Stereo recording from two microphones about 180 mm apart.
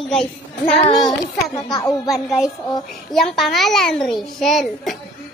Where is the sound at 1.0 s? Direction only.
20° left (ahead or behind).